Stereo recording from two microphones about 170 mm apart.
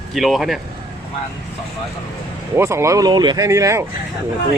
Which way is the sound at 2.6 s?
15° right (ahead or behind).